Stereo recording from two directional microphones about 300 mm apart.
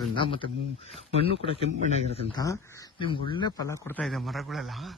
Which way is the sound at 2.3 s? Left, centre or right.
Centre.